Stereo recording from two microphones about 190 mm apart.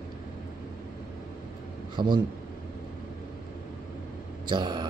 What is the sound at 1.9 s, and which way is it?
Speech, 25° right (ahead or behind).